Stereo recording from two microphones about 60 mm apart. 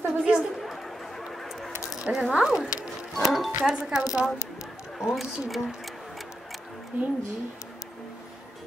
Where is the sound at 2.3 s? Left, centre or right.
Centre.